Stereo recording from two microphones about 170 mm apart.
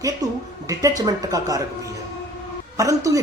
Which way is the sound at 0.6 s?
20° right (ahead or behind).